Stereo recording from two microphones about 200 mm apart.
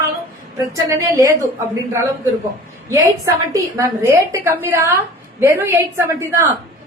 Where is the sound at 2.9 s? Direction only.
15° right (ahead or behind).